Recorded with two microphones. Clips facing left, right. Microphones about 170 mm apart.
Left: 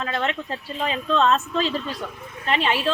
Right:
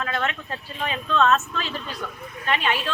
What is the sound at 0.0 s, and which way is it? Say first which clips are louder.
A woman's voice: left 2 dB; 30° left (ahead or behind).